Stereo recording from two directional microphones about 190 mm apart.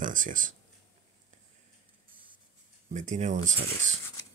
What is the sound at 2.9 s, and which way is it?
Speech, 40° right (ahead or behind).